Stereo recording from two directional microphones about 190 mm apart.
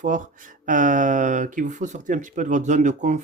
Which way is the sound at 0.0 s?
40° right (ahead or behind).